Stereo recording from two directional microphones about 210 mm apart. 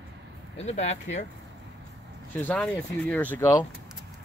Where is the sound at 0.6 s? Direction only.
30° left (ahead or behind).